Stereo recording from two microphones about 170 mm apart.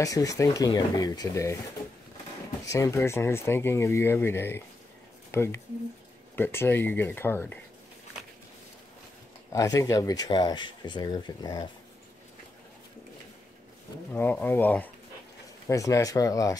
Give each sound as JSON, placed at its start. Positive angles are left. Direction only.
{"t": 0.0, "sound": "speech", "side_deg": 20}
{"t": 2.6, "sound": "speech", "side_deg": 20}
{"t": 9.5, "sound": "speech", "side_deg": 20}
{"t": 14.1, "sound": "speech", "side_deg": 10}